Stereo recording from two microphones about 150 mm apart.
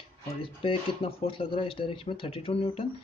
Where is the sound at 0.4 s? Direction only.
40° left (ahead or behind).